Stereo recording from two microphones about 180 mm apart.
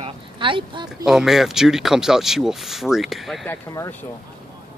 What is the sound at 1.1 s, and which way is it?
Speech, centre (ahead or behind).